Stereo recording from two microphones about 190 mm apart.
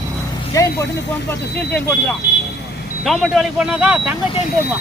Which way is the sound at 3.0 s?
Centre (ahead or behind).